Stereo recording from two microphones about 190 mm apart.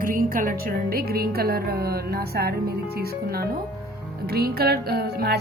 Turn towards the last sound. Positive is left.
turn(degrees=-55)  # may be behind; listen again after turning